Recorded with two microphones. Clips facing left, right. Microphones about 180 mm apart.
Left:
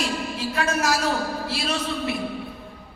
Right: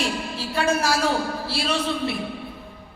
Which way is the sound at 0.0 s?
30° right (ahead or behind).